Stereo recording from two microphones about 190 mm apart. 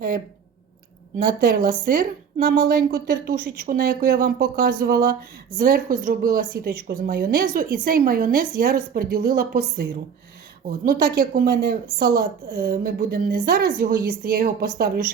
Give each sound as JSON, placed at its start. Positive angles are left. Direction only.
{"t": 1.4, "sound": "a woman's voice", "side_deg": -50}